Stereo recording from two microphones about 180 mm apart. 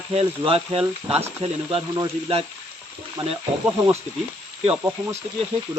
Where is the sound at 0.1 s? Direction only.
35° right (ahead or behind).